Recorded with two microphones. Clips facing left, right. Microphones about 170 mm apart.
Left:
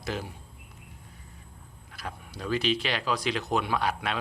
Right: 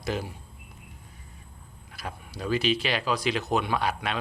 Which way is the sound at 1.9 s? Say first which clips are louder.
Right 1 dB; 10° right (ahead or behind).